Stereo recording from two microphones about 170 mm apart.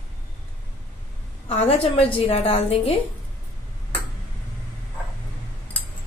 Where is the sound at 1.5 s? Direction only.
35° left (ahead or behind).